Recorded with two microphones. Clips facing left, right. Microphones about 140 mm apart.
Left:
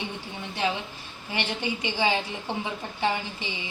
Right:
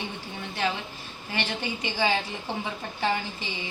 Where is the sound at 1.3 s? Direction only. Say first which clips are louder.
Left 1 dB; 15° left (ahead or behind).